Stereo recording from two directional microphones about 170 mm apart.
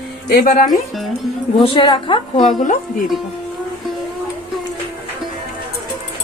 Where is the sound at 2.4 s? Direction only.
45° left (ahead or behind).